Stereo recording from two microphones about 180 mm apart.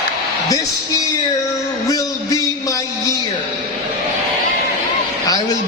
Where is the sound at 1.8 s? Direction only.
20° left (ahead or behind).